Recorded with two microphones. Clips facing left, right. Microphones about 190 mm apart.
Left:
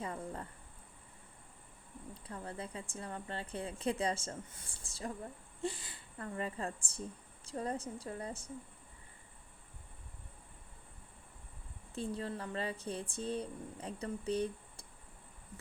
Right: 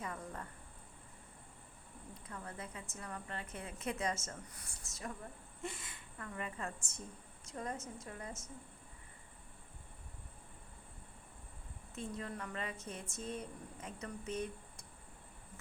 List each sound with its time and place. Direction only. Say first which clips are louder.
0.0 s a sound: left 3 dB; 30° left (ahead or behind)
2.1 s a woman's voice: left 4 dB; 30° left (ahead or behind)
11.9 s a woman's voice: left 4 dB; 30° left (ahead or behind)